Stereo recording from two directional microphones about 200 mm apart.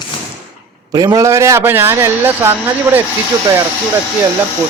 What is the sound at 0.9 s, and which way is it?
A man's voice, 20° right (ahead or behind).